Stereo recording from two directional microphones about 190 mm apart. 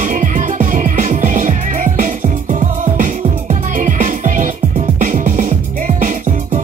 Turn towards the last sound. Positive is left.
turn(degrees=-40)  # may be behind; listen again after turning